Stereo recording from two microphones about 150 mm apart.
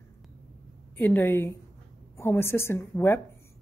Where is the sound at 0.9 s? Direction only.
15° left (ahead or behind).